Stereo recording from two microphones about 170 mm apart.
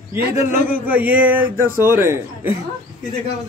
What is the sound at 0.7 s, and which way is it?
Speech, 10° right (ahead or behind).